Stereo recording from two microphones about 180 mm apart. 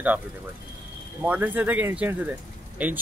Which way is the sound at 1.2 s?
10° right (ahead or behind).